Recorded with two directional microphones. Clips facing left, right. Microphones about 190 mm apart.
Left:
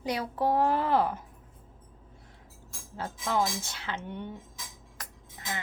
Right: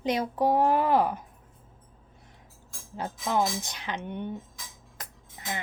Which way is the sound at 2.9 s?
15° right (ahead or behind).